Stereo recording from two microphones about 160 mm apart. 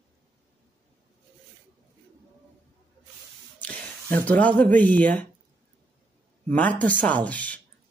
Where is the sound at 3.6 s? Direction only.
10° left (ahead or behind).